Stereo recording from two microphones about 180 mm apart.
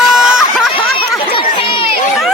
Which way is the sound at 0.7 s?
30° left (ahead or behind).